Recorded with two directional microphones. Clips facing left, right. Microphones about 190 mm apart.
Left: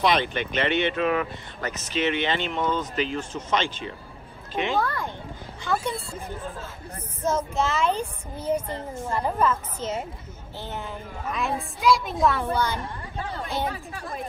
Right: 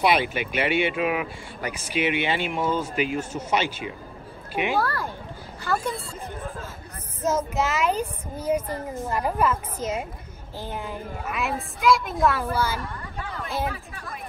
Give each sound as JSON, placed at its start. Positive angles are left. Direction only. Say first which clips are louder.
{"t": 0.0, "sound": "a woman's voice", "louder": "right 1 dB", "side_deg": -10}
{"t": 7.2, "sound": "a woman's voice", "louder": "right 1 dB", "side_deg": -10}
{"t": 12.8, "sound": "a sound", "louder": "left 1 dB", "side_deg": 30}
{"t": 13.9, "sound": "speech", "louder": "left 4 dB", "side_deg": 30}